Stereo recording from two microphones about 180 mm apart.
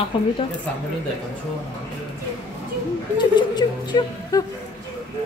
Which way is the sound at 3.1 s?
25° left (ahead or behind).